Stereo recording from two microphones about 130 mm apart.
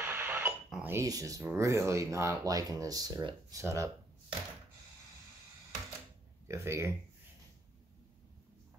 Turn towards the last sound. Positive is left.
turn(degrees=-20)  # may be behind; listen again after turning